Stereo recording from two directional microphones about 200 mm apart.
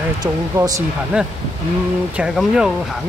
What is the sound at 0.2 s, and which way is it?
Speech, 15° right (ahead or behind).